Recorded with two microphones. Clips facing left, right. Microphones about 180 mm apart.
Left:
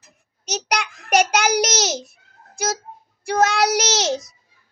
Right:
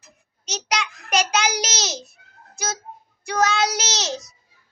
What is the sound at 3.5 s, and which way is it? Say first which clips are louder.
Speech: left 4 dB; 60° left (ahead or behind).